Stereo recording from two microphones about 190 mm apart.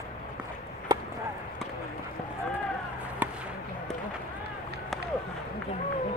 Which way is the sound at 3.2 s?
10° right (ahead or behind).